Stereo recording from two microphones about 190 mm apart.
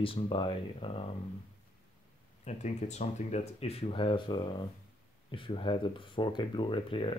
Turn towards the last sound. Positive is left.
turn(degrees=30)  # may be behind; listen again after turning